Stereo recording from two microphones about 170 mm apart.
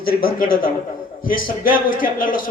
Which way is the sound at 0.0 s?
60° left (ahead or behind).